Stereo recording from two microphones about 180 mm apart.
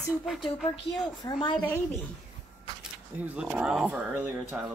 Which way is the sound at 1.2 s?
25° left (ahead or behind).